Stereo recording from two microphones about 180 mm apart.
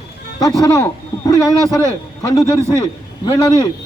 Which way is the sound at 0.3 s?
20° left (ahead or behind).